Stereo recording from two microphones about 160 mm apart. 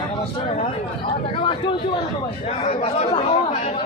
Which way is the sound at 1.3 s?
35° left (ahead or behind).